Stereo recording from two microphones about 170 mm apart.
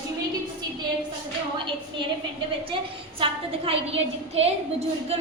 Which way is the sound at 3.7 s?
35° right (ahead or behind).